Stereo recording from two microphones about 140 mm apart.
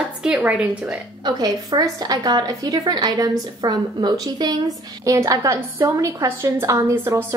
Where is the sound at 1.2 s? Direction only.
25° right (ahead or behind).